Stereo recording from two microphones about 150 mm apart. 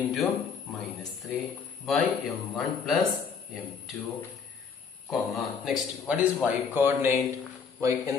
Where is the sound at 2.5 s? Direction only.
Centre (ahead or behind).